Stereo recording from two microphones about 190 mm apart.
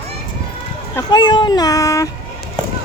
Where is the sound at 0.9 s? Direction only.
20° left (ahead or behind).